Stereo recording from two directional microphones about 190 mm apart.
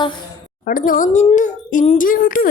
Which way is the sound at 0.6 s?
45° left (ahead or behind).